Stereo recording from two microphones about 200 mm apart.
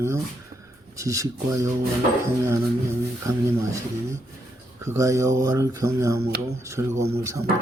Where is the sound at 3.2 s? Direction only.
15° right (ahead or behind).